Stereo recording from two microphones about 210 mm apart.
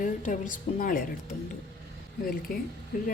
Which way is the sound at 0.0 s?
40° left (ahead or behind).